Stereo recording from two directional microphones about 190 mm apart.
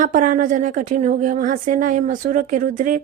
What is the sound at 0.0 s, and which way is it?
A woman's voice, 45° right (ahead or behind).